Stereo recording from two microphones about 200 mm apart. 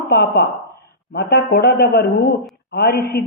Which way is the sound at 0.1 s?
55° left (ahead or behind).